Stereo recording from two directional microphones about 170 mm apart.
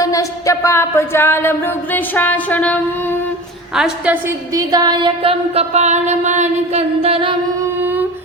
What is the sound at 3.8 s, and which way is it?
Speech, 5° right (ahead or behind).